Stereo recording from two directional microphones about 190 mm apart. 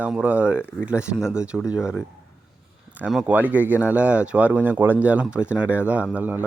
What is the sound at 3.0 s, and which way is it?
Speech, 5° right (ahead or behind).